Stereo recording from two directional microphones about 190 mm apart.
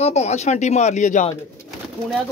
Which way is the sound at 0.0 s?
35° left (ahead or behind).